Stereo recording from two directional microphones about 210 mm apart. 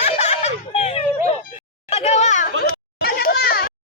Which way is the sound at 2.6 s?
45° left (ahead or behind).